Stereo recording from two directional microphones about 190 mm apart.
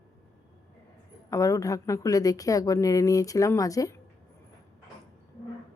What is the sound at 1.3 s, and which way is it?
A woman's voice, 15° left (ahead or behind).